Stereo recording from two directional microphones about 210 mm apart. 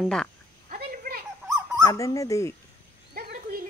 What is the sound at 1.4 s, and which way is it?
Dog, 15° right (ahead or behind).